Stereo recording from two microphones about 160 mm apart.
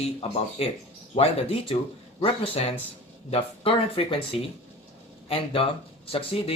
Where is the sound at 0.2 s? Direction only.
40° left (ahead or behind).